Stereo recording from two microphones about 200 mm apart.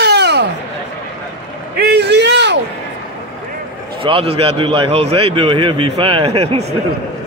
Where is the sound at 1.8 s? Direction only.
55° right (ahead or behind).